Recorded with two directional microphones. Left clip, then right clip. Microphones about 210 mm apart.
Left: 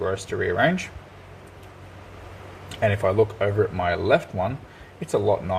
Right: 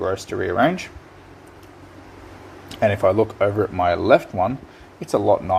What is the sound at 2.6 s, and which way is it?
Speech, 40° right (ahead or behind).